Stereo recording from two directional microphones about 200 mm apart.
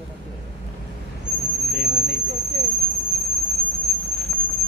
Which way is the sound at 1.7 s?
50° left (ahead or behind).